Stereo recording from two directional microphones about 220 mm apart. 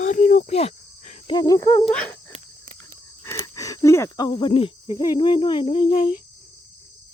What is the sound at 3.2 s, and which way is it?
Speech, 15° left (ahead or behind).